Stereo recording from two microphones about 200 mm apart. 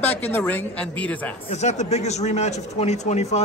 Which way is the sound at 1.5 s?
35° left (ahead or behind).